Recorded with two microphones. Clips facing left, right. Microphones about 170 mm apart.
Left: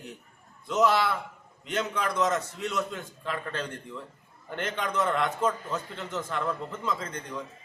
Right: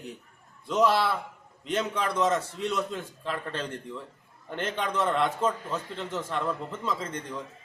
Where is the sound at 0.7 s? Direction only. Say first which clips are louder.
Even; 30° right (ahead or behind).